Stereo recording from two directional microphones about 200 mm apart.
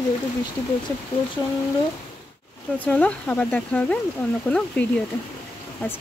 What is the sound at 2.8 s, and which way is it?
Speech, 5° left (ahead or behind).